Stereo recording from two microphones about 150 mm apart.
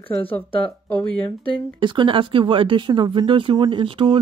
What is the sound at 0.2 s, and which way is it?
Speech, 40° left (ahead or behind).